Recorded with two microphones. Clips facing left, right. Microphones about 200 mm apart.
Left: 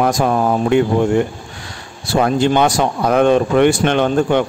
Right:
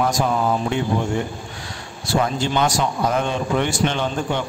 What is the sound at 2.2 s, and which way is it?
Speech, 60° left (ahead or behind).